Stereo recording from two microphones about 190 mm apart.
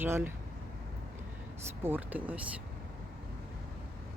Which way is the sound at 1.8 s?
10° right (ahead or behind).